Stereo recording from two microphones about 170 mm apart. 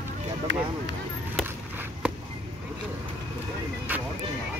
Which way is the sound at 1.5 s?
10° right (ahead or behind).